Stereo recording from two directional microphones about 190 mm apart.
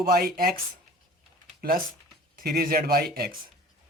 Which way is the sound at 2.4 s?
50° right (ahead or behind).